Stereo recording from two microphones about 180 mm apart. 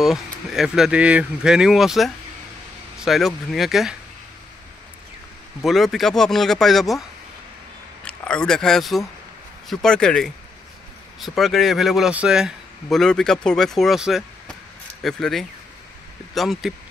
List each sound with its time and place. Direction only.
0.0 s speech: centre (ahead or behind)
5.6 s speech: centre (ahead or behind)
8.0 s speech: 5° left (ahead or behind)